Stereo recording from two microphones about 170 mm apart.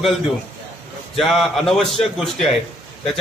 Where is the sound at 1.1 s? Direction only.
Centre (ahead or behind).